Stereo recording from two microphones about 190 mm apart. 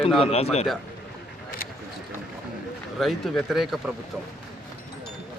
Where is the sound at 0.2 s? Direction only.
35° left (ahead or behind).